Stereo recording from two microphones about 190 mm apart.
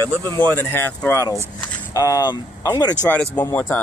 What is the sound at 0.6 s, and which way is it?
Speech, 10° left (ahead or behind).